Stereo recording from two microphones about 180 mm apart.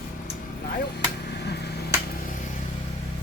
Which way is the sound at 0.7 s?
65° left (ahead or behind).